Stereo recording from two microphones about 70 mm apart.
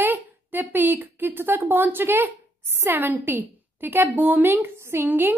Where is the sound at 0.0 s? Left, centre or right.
Right.